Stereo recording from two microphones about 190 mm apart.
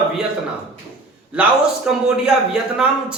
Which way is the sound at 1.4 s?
5° right (ahead or behind).